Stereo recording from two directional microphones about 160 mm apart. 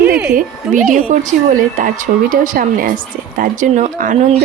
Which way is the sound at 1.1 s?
55° right (ahead or behind).